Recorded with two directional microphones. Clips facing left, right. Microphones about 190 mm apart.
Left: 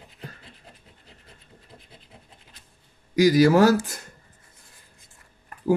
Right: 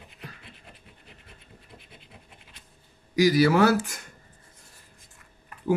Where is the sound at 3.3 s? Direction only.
45° left (ahead or behind).